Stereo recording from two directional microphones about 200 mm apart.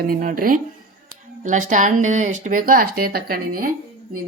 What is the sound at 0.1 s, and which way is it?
Speech, 45° right (ahead or behind).